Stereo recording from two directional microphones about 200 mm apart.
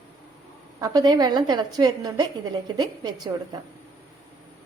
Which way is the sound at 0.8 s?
20° right (ahead or behind).